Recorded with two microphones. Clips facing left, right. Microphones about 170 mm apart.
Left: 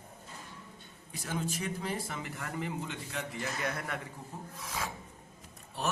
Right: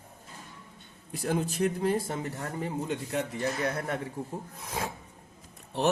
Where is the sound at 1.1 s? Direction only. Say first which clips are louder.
Right 7 dB; 60° right (ahead or behind).